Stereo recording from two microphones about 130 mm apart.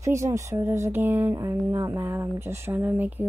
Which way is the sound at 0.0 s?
25° right (ahead or behind).